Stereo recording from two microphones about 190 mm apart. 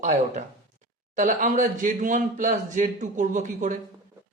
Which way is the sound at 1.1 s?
45° right (ahead or behind).